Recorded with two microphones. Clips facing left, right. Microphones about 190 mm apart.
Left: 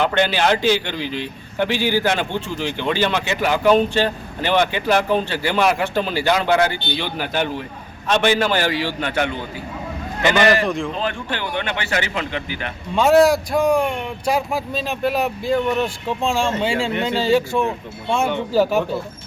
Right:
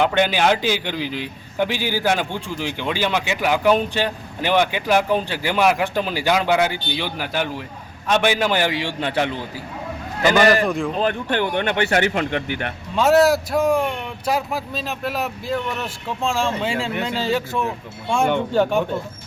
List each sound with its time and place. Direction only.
0.0 s a man's voice: 15° right (ahead or behind); by 9.3 s 30° right (ahead or behind)
10.7 s speech: centre (ahead or behind)
11.0 s speech: 55° right (ahead or behind)
13.0 s speech: centre (ahead or behind)